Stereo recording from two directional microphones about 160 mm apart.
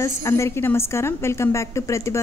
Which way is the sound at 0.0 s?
20° left (ahead or behind).